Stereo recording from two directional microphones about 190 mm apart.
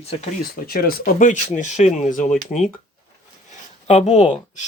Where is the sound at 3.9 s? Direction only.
35° left (ahead or behind).